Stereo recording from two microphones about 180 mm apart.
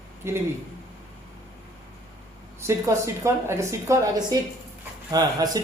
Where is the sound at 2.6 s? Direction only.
15° right (ahead or behind).